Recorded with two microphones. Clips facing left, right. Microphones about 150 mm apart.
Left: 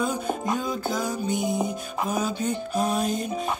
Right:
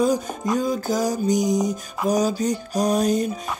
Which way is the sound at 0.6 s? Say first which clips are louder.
Right 5 dB; 40° right (ahead or behind).